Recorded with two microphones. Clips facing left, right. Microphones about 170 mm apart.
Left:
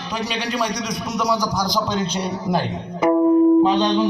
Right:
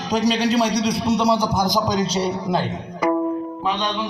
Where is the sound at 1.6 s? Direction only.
45° right (ahead or behind).